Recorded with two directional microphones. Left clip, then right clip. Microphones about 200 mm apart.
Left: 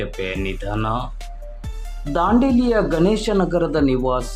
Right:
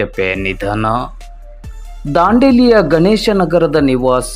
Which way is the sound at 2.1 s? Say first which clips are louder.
Right 8 dB; 25° right (ahead or behind).